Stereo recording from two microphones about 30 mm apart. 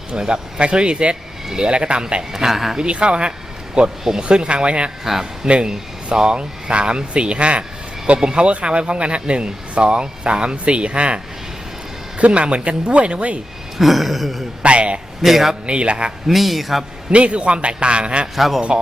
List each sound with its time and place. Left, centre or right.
0.2 s speech: right
0.6 s speech: right
2.5 s a man's voice: centre
2.8 s speech: right
5.4 s speech: centre
6.1 s speech: right
13.7 s speech: centre
14.6 s speech: right
15.2 s a man's voice: centre
15.6 s speech: right
16.2 s speech: centre
17.1 s speech: right
18.3 s speech: centre